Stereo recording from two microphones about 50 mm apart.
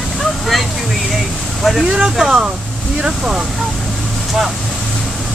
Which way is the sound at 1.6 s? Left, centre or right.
Centre.